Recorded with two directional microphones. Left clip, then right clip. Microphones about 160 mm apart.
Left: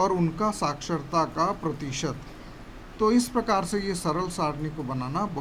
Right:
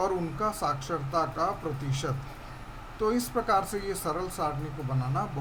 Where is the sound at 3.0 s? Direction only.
25° left (ahead or behind).